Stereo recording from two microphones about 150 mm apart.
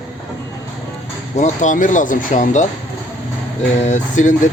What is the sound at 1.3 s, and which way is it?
Speech, 55° left (ahead or behind).